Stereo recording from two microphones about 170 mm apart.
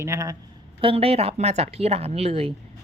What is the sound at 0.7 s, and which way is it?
A woman's voice, 35° right (ahead or behind).